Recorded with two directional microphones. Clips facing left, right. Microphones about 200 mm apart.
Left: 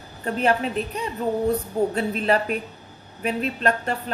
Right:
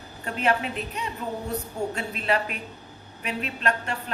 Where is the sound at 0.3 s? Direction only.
35° left (ahead or behind).